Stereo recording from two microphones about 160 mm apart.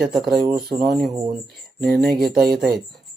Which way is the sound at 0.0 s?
Centre (ahead or behind).